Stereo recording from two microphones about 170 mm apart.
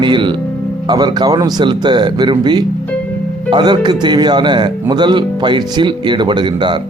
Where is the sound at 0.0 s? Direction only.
30° right (ahead or behind).